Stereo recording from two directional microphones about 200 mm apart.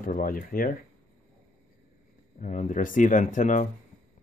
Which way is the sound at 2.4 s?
40° left (ahead or behind).